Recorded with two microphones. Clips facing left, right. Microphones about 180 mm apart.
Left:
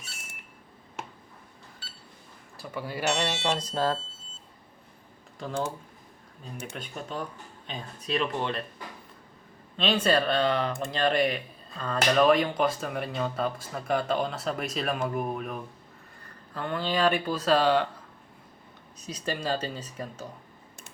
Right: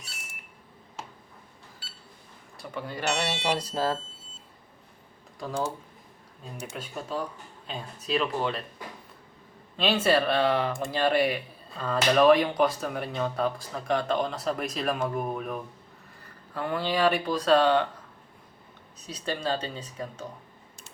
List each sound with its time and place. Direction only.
2.6 s speech: 5° left (ahead or behind)
6.7 s speech: 5° right (ahead or behind)
9.7 s speech: 5° right (ahead or behind)
16.6 s speech: 5° right (ahead or behind)
19.1 s speech: 5° left (ahead or behind)